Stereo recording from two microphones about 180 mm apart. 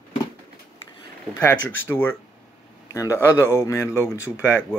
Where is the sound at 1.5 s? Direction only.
90° left.